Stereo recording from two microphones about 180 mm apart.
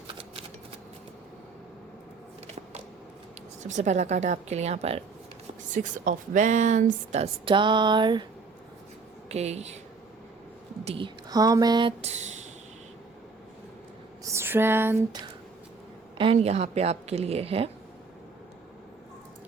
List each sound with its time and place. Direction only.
3.6 s a woman's voice: 40° right (ahead or behind); by 8.3 s 25° right (ahead or behind)
9.3 s a woman's voice: 35° right (ahead or behind)
10.8 s speech: 30° right (ahead or behind)
14.3 s a sound: 15° right (ahead or behind)
16.1 s a woman's voice: 30° right (ahead or behind)